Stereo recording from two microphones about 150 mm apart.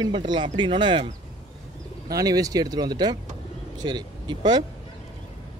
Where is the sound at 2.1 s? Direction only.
25° right (ahead or behind).